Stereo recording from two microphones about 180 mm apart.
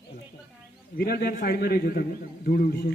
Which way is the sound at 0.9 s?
60° left (ahead or behind).